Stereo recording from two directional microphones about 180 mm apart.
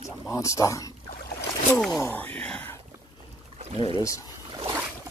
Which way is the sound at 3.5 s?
35° right (ahead or behind).